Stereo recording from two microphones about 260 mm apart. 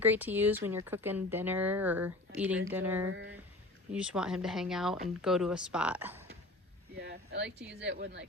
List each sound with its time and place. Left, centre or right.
0.0 s speech: centre
3.1 s speech: right
3.9 s speech: centre
7.0 s speech: right